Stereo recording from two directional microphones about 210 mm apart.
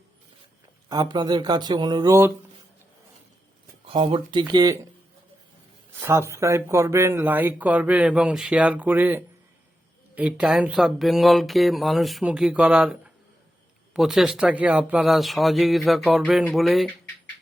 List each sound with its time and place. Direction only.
0.9 s speech: 20° right (ahead or behind)
3.8 s speech: 25° right (ahead or behind)
6.0 s speech: 10° right (ahead or behind)